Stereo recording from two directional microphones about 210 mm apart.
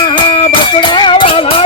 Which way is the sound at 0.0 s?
20° left (ahead or behind).